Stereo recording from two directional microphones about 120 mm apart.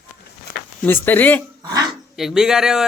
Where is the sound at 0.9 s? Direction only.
15° left (ahead or behind).